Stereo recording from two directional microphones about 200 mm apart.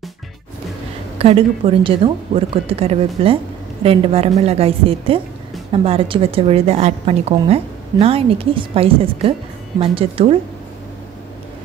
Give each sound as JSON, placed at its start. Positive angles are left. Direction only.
{"t": 1.1, "sound": "a woman's voice", "side_deg": -30}